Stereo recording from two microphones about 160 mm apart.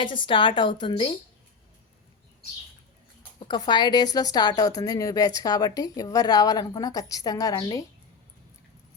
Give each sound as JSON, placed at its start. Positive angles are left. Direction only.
{"t": 0.0, "sound": "a woman's voice", "side_deg": 30}
{"t": 3.4, "sound": "a woman's voice", "side_deg": 30}